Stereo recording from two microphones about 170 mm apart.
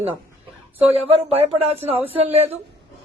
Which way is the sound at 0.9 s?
35° right (ahead or behind).